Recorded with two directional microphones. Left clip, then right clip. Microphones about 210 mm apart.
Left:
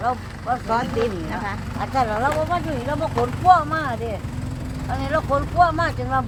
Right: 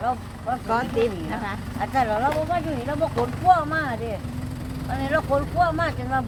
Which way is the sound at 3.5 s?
5° left (ahead or behind).